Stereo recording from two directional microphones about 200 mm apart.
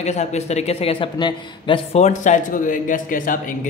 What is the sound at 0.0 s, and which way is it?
A man's voice, 35° left (ahead or behind).